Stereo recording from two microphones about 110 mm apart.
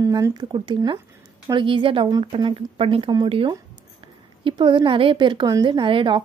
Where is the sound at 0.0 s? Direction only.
35° right (ahead or behind); by 3.5 s 55° right (ahead or behind).